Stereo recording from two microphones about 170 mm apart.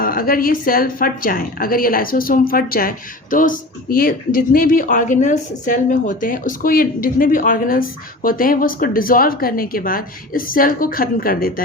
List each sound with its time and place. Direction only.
0.0 s speech: 55° left (ahead or behind)